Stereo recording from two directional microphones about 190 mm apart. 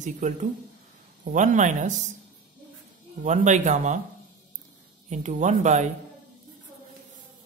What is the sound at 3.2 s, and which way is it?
Speech, 40° right (ahead or behind).